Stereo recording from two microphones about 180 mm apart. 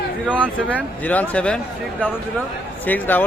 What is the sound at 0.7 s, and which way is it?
Speech, 10° left (ahead or behind).